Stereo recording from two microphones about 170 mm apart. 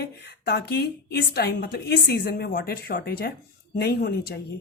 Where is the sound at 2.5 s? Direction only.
60° left (ahead or behind).